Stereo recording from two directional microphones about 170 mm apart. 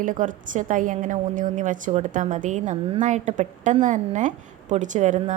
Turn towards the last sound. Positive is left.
turn(degrees=-45)  # may be behind; listen again after turning